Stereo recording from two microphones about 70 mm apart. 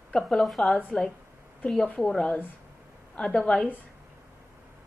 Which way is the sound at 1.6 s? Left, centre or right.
Centre.